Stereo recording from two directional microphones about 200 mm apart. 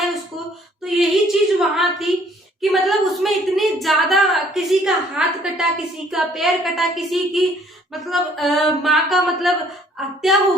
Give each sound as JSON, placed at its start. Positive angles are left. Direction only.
{"t": 0.9, "sound": "a woman's voice", "side_deg": 0}